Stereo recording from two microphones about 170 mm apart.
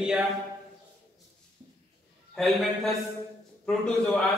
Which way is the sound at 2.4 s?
Centre (ahead or behind).